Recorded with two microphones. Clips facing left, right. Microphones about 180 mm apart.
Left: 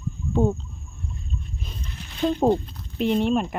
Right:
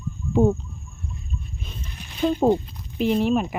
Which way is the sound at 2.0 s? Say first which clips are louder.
Right 1 dB; 10° right (ahead or behind).